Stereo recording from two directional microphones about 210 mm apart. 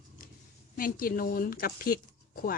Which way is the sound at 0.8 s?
45° left (ahead or behind).